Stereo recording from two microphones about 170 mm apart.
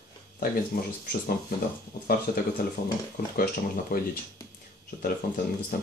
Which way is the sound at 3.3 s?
55° left (ahead or behind).